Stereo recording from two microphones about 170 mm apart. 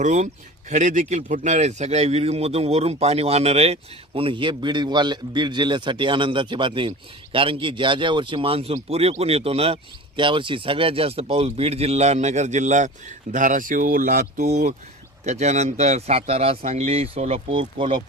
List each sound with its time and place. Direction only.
0.0 s speech: 45° right (ahead or behind)